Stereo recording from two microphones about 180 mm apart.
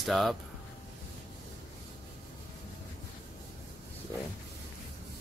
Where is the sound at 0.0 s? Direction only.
Centre (ahead or behind).